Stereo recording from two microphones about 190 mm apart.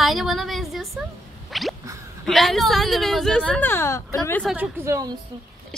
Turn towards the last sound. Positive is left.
turn(degrees=-15)  # may be behind; listen again after turning